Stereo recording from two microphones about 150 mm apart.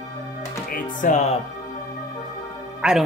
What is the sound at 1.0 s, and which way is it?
Speech, 55° left (ahead or behind).